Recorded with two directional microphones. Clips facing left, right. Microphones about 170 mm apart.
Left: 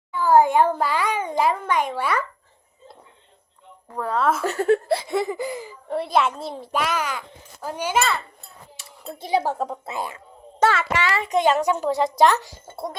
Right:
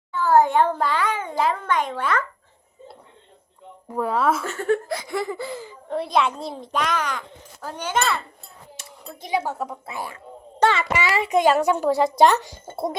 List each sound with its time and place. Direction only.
0.1 s speech: 10° left (ahead or behind)
3.8 s a child's voice: 5° right (ahead or behind)
4.4 s speech: 35° left (ahead or behind); by 8.2 s centre (ahead or behind)
9.0 s speech: 30° left (ahead or behind)
10.6 s a child's voice: 5° left (ahead or behind)
10.9 s a child's voice: 10° right (ahead or behind)
12.7 s cough: 25° right (ahead or behind)